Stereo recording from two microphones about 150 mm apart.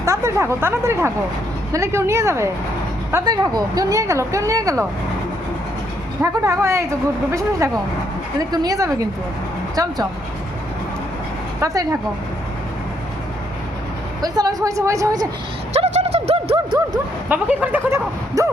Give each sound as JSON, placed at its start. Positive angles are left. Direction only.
{"t": 0.0, "sound": "speech", "side_deg": -20}
{"t": 6.2, "sound": "speech", "side_deg": -20}
{"t": 11.6, "sound": "speech", "side_deg": -20}
{"t": 14.2, "sound": "speech", "side_deg": -25}
{"t": 15.7, "sound": "a sound", "side_deg": -45}
{"t": 17.2, "sound": "speech", "side_deg": -10}